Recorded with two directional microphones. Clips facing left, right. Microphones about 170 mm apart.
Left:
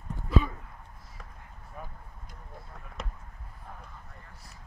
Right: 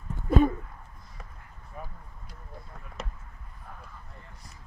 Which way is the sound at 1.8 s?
Centre (ahead or behind).